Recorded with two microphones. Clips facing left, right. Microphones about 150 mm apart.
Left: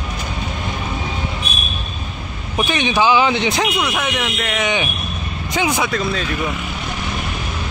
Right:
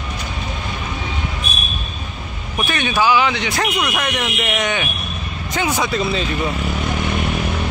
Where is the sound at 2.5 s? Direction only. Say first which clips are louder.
Left 2 dB; 20° left (ahead or behind).